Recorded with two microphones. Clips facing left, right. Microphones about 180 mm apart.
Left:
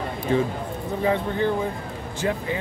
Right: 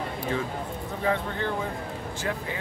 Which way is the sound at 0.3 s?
20° left (ahead or behind).